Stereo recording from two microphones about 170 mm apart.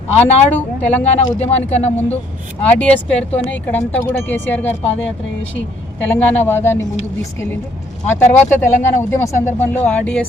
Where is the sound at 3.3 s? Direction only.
10° left (ahead or behind).